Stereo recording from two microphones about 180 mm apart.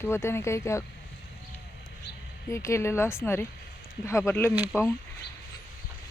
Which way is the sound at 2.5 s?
15° left (ahead or behind).